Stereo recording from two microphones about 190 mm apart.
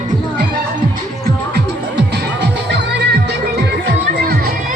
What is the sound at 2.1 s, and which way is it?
Music, 65° right (ahead or behind).